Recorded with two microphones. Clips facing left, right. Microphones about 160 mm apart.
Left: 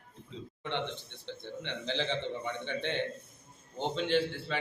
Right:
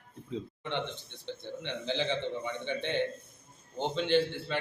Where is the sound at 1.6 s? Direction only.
Centre (ahead or behind).